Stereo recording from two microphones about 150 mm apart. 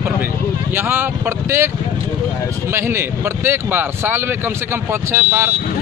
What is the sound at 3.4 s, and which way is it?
Speech, 15° right (ahead or behind).